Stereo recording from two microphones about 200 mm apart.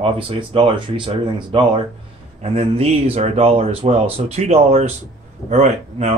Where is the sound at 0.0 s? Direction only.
25° right (ahead or behind).